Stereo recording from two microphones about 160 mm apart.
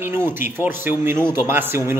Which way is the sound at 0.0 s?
15° right (ahead or behind).